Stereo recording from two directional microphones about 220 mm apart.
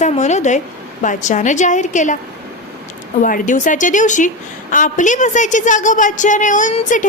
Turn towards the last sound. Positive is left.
turn(degrees=35)  # may be behind; listen again after turning